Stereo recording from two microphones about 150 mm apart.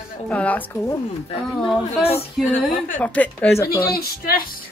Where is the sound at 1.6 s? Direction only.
Centre (ahead or behind).